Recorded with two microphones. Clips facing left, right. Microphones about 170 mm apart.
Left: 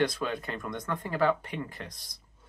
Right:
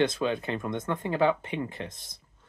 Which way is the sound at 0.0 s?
25° right (ahead or behind).